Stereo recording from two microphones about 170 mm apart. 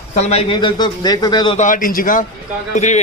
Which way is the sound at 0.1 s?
40° left (ahead or behind).